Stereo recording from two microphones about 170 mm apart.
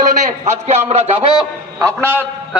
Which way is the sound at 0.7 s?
40° right (ahead or behind).